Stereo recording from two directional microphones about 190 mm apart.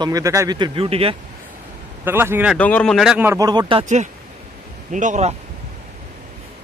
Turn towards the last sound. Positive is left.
turn(degrees=-40)  # may be behind; listen again after turning